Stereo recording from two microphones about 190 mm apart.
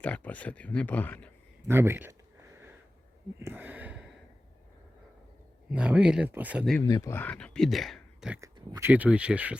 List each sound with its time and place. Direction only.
0.0 s speech: 5° left (ahead or behind)
1.6 s a sound: 10° right (ahead or behind)
5.7 s speech: 5° right (ahead or behind)
6.8 s speech: 15° left (ahead or behind); by 8.4 s centre (ahead or behind)
8.4 s speech: 20° right (ahead or behind)
8.9 s speech: 5° right (ahead or behind)